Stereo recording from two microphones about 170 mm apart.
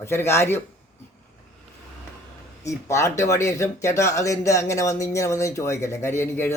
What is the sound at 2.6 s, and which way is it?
Speech, 20° left (ahead or behind).